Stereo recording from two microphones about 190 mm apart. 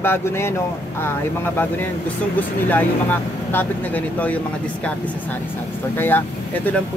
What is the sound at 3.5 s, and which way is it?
Speech, 10° left (ahead or behind).